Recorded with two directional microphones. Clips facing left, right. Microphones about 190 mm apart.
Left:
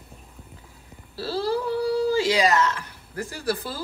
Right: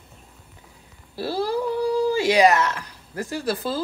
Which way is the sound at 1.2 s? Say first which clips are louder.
Right 1 dB; 15° right (ahead or behind).